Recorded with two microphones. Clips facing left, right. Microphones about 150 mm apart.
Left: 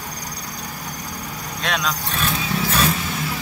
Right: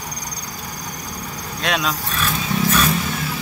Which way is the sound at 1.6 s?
5° right (ahead or behind).